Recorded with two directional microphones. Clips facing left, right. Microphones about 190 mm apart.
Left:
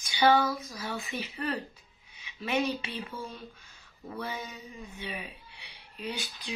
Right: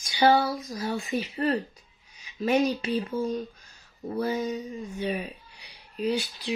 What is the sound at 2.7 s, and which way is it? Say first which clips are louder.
Speech: right 10 dB; 40° right (ahead or behind).